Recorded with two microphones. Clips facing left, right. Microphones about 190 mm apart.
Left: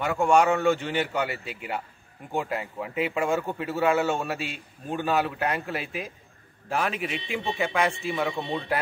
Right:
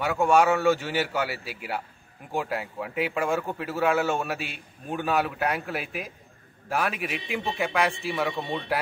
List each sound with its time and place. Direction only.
0.0 s speech: centre (ahead or behind)